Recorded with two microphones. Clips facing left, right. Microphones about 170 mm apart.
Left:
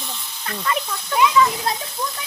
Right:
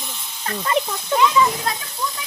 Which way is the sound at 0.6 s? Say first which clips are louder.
Right 3 dB; 25° right (ahead or behind).